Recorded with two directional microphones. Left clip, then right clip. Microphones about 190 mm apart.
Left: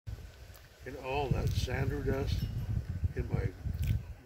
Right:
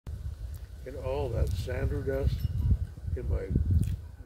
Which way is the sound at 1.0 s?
45° left (ahead or behind).